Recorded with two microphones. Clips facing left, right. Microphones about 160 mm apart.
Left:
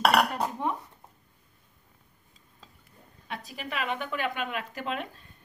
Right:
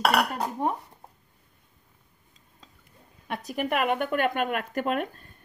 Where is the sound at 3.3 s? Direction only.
55° right (ahead or behind).